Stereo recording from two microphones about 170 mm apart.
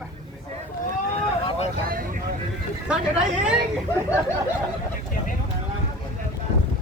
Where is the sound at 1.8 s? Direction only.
55° right (ahead or behind).